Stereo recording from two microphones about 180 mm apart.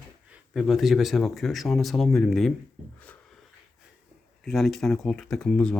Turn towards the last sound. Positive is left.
turn(degrees=5)  # may be behind; listen again after turning